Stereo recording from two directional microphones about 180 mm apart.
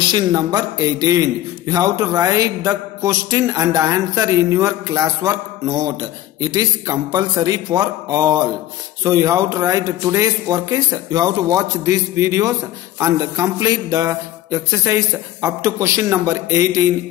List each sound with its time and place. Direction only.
0.1 s a man's voice: 20° right (ahead or behind)